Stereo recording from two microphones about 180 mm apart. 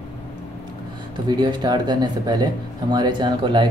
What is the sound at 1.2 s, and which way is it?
Speech, 25° right (ahead or behind).